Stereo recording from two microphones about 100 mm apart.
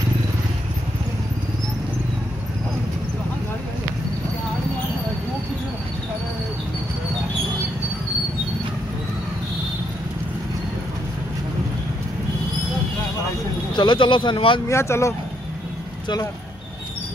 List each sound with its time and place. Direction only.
13.7 s speech: 55° left (ahead or behind)
14.7 s speech: 30° left (ahead or behind)